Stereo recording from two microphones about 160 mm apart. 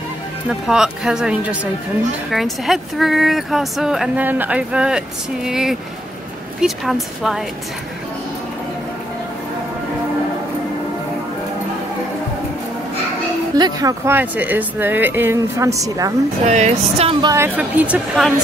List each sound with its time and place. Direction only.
0.5 s speech: 5° right (ahead or behind)
13.6 s speech: 25° right (ahead or behind)
16.4 s speech: 45° right (ahead or behind)
17.2 s a woman's voice: 20° right (ahead or behind)
17.6 s speech: 10° right (ahead or behind)